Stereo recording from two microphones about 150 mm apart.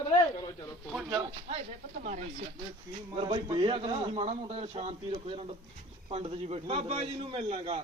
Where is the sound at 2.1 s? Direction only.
55° right (ahead or behind).